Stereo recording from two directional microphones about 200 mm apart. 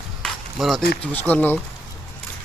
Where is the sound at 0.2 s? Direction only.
Centre (ahead or behind).